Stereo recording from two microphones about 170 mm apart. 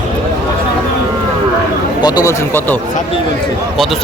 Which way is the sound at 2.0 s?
25° left (ahead or behind).